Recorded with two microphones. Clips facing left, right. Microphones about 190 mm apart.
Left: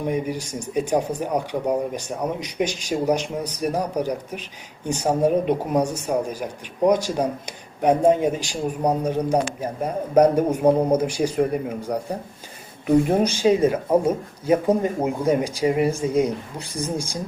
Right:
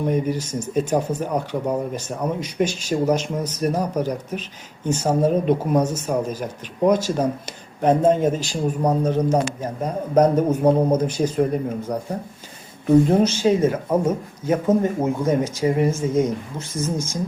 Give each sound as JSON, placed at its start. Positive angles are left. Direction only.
{"t": 0.0, "sound": "a man's voice", "side_deg": 10}
{"t": 13.1, "sound": "a man's voice", "side_deg": 15}